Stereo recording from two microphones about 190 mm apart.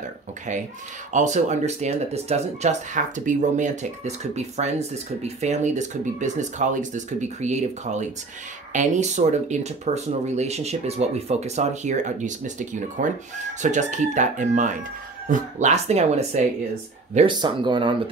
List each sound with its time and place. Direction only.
1.1 s speech: 40° right (ahead or behind)
17.3 s speech: 25° right (ahead or behind)